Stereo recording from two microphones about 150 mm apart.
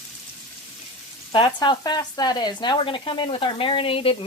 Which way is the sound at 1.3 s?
35° left (ahead or behind).